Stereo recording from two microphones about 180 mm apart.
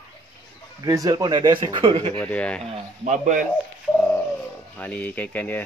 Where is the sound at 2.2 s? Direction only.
10° left (ahead or behind).